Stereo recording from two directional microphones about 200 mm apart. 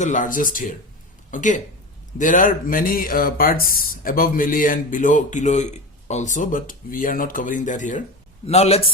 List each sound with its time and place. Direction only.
0.0 s speech: 40° left (ahead or behind)